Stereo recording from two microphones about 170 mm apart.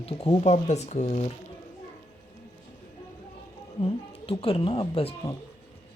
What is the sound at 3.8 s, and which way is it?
Speech, 35° left (ahead or behind).